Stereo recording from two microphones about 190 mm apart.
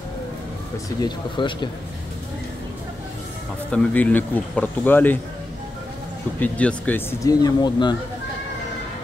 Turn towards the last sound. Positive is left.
turn(degrees=20)  # may be behind; listen again after turning